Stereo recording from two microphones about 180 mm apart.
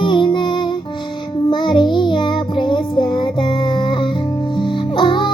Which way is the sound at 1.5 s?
25° left (ahead or behind).